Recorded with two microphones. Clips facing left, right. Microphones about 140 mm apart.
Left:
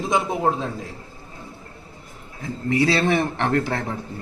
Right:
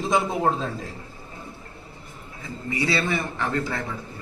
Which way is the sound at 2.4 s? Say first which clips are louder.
Left 7 dB; 75° left (ahead or behind).